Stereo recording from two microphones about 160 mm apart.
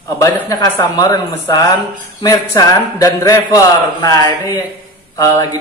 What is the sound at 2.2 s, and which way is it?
A man's voice, 25° left (ahead or behind).